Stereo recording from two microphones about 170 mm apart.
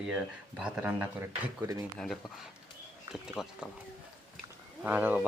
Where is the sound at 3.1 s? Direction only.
Centre (ahead or behind).